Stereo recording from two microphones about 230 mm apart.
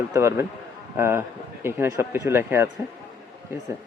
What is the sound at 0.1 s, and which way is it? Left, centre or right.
Speech, centre.